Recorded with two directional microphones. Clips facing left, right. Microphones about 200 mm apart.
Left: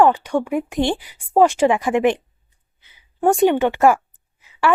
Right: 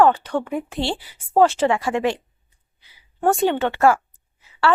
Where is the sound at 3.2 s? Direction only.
15° left (ahead or behind).